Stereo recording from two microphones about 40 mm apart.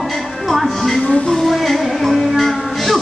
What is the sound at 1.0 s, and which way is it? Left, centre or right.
Music, left.